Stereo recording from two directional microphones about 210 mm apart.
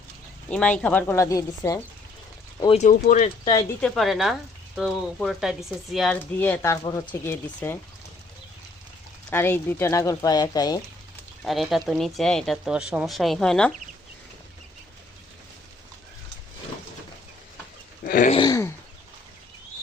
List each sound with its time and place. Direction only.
0.5 s speech: 5° left (ahead or behind)
2.7 s speech: 35° left (ahead or behind)
3.8 s speech: centre (ahead or behind)
9.3 s speech: 10° left (ahead or behind)
11.4 s speech: centre (ahead or behind)
18.0 s a sound: 40° left (ahead or behind)
18.3 s a sound: 20° left (ahead or behind)